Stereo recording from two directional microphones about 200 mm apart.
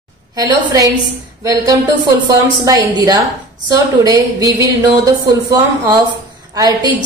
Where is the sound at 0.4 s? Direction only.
20° right (ahead or behind).